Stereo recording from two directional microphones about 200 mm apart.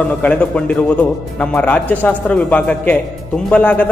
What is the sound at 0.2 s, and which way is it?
A man's voice, 5° left (ahead or behind).